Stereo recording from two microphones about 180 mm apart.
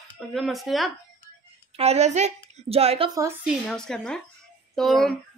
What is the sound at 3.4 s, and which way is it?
A woman's voice, centre (ahead or behind).